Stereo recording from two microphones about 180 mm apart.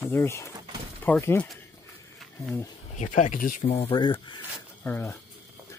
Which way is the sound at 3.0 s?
45° left (ahead or behind).